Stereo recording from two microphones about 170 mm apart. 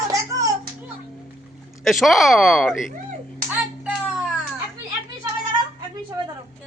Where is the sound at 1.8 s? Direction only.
Centre (ahead or behind).